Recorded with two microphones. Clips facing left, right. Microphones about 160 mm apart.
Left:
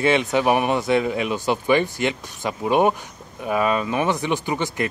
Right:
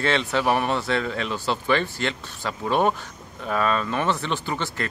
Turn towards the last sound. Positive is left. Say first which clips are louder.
# left 4 dB
turn(degrees=15)  # may be behind; listen again after turning